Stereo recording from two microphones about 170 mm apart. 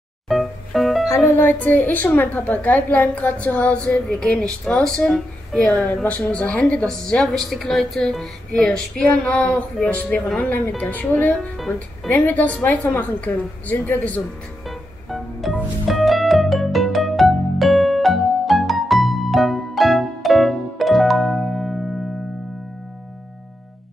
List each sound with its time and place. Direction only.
0.3 s music: centre (ahead or behind)
1.0 s a woman's voice: 15° left (ahead or behind)
14.7 s music: centre (ahead or behind)